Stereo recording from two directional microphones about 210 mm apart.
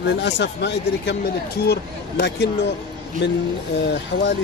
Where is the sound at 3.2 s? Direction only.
55° left (ahead or behind).